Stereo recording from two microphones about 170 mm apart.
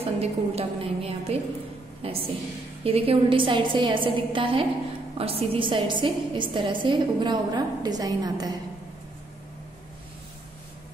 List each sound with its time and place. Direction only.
0.0 s a woman's voice: 35° right (ahead or behind)